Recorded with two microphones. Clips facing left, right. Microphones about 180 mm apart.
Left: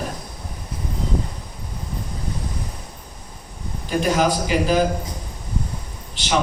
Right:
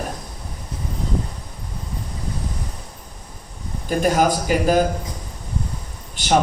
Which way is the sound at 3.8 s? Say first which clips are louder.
Right 1 dB; 50° right (ahead or behind).